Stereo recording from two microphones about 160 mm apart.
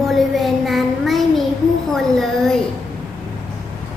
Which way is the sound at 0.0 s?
Centre (ahead or behind).